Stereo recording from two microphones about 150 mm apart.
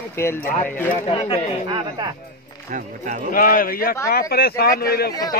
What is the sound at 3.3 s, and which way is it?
Speech, 70° left (ahead or behind).